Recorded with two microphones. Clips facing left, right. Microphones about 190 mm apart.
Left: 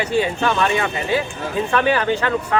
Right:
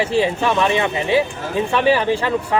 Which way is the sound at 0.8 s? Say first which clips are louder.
Right 3 dB; 25° right (ahead or behind).